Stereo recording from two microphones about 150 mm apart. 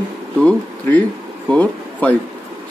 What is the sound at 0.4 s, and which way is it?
Speech, 10° left (ahead or behind).